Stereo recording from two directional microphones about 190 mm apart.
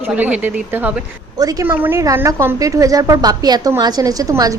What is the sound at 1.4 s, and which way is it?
Speech, 20° right (ahead or behind).